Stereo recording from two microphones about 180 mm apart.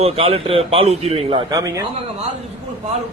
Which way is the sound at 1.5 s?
20° right (ahead or behind).